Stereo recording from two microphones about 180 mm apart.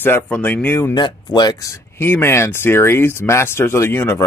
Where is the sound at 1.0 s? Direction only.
25° left (ahead or behind).